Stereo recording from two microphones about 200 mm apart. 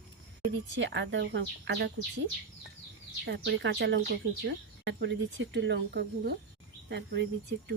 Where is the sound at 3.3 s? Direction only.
65° right (ahead or behind).